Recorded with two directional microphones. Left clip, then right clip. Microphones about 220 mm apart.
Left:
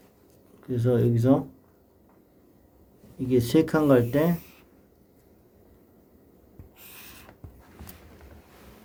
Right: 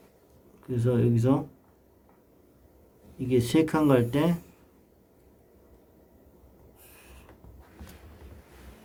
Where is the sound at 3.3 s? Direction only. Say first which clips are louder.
Left 2 dB; 10° left (ahead or behind).